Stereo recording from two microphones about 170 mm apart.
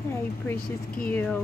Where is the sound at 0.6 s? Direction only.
60° left (ahead or behind).